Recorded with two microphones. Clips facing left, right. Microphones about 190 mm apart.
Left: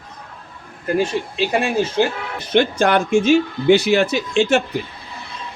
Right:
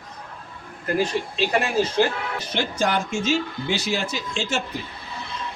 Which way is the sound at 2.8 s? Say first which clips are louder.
Left 8 dB; 60° left (ahead or behind).